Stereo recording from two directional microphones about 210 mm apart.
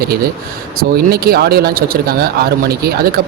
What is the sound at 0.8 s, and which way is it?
Speech, 45° right (ahead or behind).